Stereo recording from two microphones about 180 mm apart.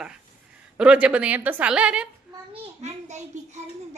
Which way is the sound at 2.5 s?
40° right (ahead or behind).